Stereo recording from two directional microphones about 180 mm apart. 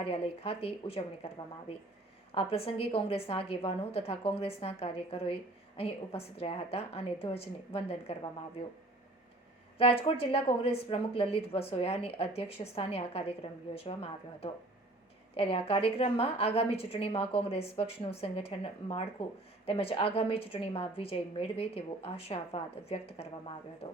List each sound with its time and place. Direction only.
0.0 s a woman's voice: 30° left (ahead or behind)
2.3 s a woman's voice: 30° left (ahead or behind)
9.7 s a woman's voice: 30° left (ahead or behind)
23.8 s music: 30° left (ahead or behind)